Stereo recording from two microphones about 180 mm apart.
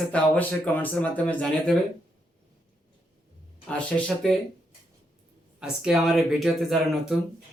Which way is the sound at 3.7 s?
5° left (ahead or behind).